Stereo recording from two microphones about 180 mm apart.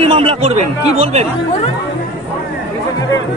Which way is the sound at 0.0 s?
35° right (ahead or behind).